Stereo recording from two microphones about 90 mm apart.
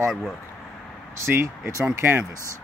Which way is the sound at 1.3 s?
30° right (ahead or behind).